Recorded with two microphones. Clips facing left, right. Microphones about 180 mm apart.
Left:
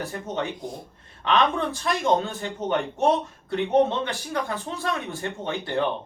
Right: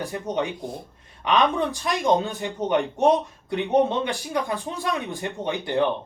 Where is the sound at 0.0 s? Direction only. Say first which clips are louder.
Right 3 dB; 15° right (ahead or behind).